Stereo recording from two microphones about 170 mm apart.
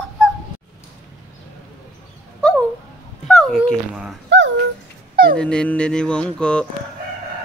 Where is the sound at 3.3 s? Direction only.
5° left (ahead or behind).